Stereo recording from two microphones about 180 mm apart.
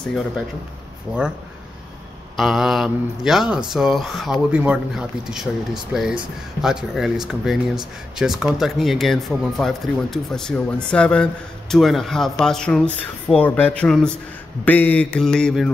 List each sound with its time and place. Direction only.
2.3 s speech: centre (ahead or behind)